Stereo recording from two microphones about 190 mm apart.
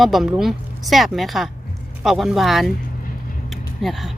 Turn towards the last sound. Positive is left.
turn(degrees=0)  # may be behind; listen again after turning